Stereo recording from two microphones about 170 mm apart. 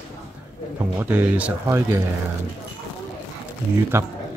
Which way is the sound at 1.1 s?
10° right (ahead or behind).